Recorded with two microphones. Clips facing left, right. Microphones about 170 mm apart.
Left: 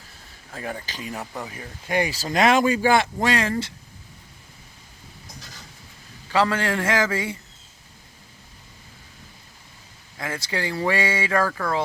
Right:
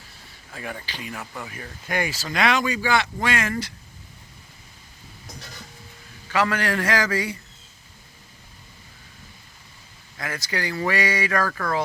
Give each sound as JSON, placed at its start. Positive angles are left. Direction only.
{"t": 0.5, "sound": "speech", "side_deg": 40}
{"t": 2.2, "sound": "speech", "side_deg": 40}
{"t": 6.3, "sound": "speech", "side_deg": 25}
{"t": 10.2, "sound": "speech", "side_deg": 25}